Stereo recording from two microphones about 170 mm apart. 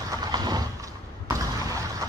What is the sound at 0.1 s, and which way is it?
Vehicle, 25° right (ahead or behind).